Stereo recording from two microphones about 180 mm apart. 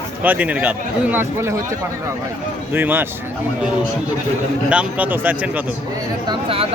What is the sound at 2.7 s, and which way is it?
Speech, 10° right (ahead or behind).